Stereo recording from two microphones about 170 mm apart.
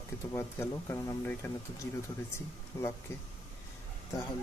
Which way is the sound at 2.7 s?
15° left (ahead or behind).